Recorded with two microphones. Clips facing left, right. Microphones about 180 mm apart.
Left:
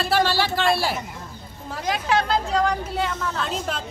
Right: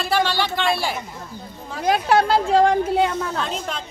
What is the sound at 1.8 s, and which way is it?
Speech, 50° right (ahead or behind).